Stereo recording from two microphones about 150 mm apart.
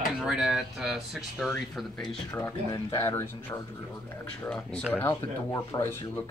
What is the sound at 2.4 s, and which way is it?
Speech, 20° left (ahead or behind).